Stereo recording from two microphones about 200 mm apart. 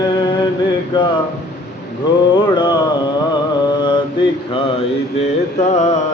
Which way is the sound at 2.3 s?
20° left (ahead or behind).